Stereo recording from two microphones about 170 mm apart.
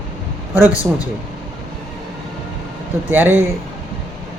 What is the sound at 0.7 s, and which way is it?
Speech, 20° left (ahead or behind).